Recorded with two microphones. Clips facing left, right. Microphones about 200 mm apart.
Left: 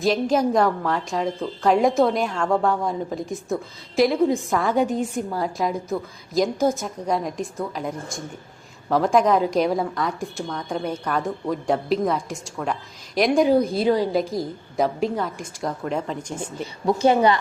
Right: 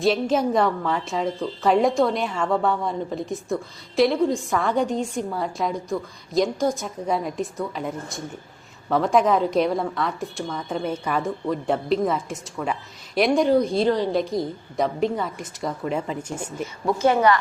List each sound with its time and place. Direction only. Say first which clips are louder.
0.0 s a woman's voice: left 1 dB; centre (ahead or behind)
17.0 s a woman's voice: left 1 dB; 20° left (ahead or behind)